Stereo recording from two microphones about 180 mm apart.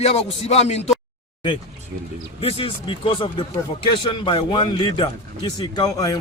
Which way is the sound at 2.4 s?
30° left (ahead or behind).